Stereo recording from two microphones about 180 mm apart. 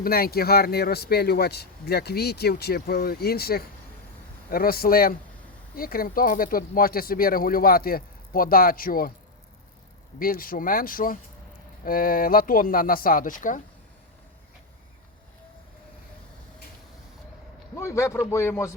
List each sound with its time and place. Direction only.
0.0 s speech: 55° left (ahead or behind)
10.2 s speech: 50° left (ahead or behind)
17.7 s speech: 15° left (ahead or behind)